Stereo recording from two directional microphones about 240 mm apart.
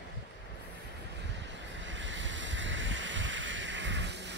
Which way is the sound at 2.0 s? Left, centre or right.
Right.